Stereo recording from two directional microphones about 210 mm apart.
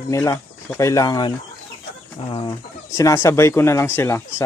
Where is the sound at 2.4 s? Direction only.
15° left (ahead or behind).